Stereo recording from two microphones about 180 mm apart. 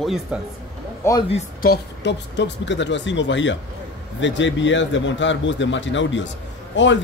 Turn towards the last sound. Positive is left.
turn(degrees=90)